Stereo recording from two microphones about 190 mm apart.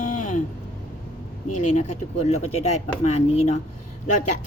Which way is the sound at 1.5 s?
40° left (ahead or behind).